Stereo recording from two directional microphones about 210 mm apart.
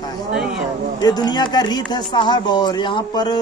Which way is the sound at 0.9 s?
20° left (ahead or behind).